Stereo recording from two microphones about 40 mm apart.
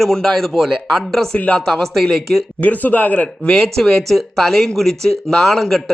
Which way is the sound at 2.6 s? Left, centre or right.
Left.